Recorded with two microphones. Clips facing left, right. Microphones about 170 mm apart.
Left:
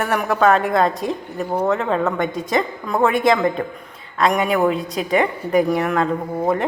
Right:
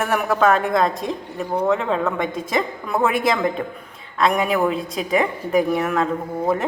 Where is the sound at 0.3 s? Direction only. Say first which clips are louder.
Left 2 dB; 30° left (ahead or behind).